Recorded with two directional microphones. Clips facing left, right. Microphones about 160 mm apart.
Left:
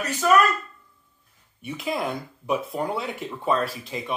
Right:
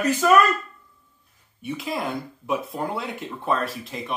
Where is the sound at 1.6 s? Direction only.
Centre (ahead or behind).